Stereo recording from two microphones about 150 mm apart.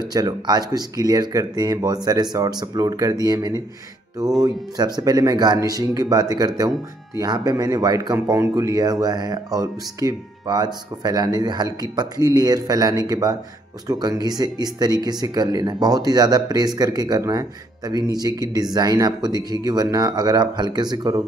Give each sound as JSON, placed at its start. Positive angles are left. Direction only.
{"t": 0.0, "sound": "speech", "side_deg": -25}